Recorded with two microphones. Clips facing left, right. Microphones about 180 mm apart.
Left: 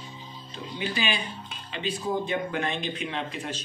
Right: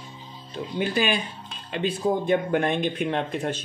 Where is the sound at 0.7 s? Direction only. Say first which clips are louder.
Right 5 dB; 50° right (ahead or behind).